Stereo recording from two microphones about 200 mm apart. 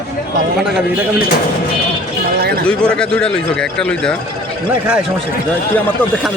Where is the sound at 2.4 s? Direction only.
50° right (ahead or behind).